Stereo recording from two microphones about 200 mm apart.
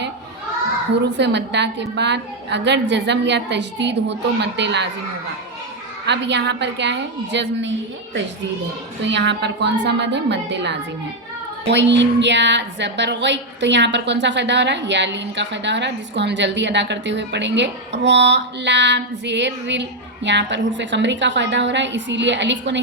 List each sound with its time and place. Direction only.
1.1 s a woman's voice: 60° right (ahead or behind)
6.1 s a woman's voice: 60° right (ahead or behind)
9.0 s a woman's voice: 60° right (ahead or behind)